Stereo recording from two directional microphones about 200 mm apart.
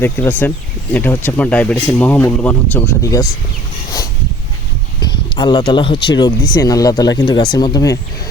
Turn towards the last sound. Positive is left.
turn(degrees=20)  # may be behind; listen again after turning